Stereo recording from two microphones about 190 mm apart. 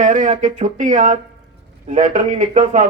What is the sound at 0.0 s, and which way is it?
Speech, 45° right (ahead or behind).